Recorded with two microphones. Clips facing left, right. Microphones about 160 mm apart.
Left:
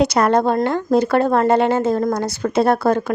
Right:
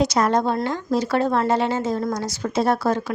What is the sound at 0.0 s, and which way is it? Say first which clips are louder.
A woman's voice: left 4 dB; 60° left (ahead or behind).